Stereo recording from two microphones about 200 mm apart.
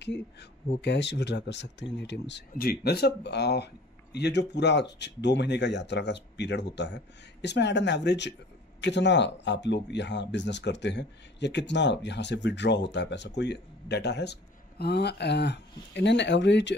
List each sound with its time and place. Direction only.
0.0 s speech: 60° left (ahead or behind)